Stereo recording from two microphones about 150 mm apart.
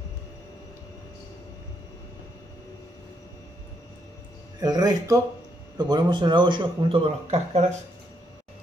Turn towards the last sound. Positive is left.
turn(degrees=-40)  # may be behind; listen again after turning